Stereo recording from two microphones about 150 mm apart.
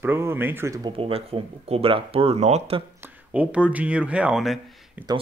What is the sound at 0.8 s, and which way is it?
Speech, 40° right (ahead or behind).